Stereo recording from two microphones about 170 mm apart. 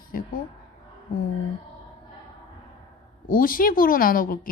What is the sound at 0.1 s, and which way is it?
Speech, 55° left (ahead or behind).